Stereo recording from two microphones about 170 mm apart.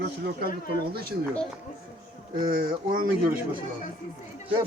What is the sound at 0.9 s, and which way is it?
Speech, 65° right (ahead or behind).